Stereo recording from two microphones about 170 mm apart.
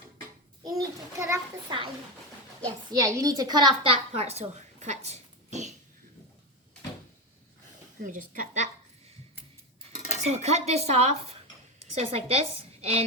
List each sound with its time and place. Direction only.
0.6 s a sound: 20° right (ahead or behind)
1.7 s a woman's voice: 25° right (ahead or behind)
2.9 s a woman's voice: 20° right (ahead or behind)
4.1 s speech: 35° right (ahead or behind)
8.0 s a woman's voice: 50° right (ahead or behind)
9.8 s cutlery: 40° right (ahead or behind)
11.9 s a woman's voice: 35° right (ahead or behind)